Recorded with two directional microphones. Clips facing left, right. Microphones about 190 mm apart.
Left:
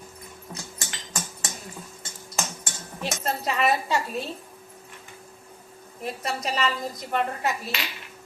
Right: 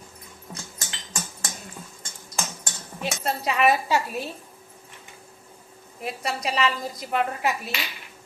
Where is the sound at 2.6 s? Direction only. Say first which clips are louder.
Right 1 dB; centre (ahead or behind).